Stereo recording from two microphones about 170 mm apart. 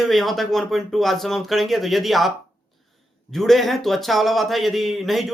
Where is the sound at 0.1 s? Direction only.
Centre (ahead or behind).